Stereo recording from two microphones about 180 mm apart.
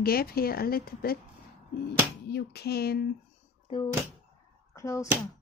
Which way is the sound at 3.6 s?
25° left (ahead or behind).